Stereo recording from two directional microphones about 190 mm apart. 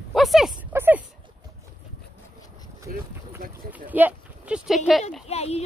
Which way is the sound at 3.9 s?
10° right (ahead or behind).